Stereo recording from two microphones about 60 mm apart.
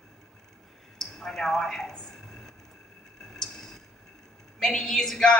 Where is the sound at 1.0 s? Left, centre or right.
Centre.